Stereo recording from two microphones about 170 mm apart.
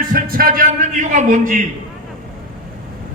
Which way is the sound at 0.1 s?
60° right (ahead or behind).